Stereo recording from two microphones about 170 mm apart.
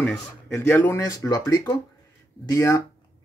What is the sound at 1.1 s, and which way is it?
Speech, 20° left (ahead or behind).